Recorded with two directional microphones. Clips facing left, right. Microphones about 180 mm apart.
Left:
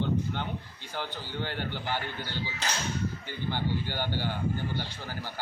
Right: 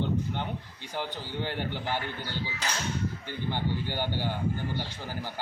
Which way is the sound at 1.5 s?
Centre (ahead or behind).